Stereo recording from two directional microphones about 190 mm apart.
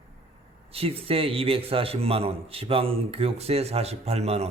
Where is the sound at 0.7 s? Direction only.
30° right (ahead or behind).